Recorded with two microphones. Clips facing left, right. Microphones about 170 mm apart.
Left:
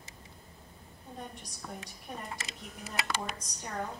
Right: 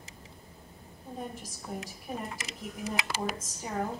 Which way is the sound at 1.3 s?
Centre (ahead or behind).